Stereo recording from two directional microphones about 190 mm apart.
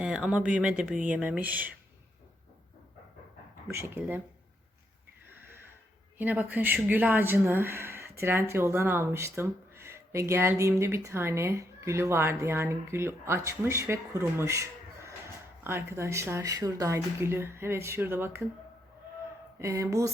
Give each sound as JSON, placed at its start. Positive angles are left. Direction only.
{"t": 0.0, "sound": "speech", "side_deg": -5}
{"t": 3.7, "sound": "speech", "side_deg": -15}
{"t": 6.1, "sound": "speech", "side_deg": -10}
{"t": 19.5, "sound": "speech", "side_deg": -15}